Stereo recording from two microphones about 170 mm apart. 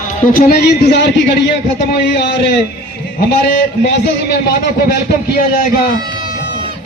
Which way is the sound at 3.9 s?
75° left (ahead or behind).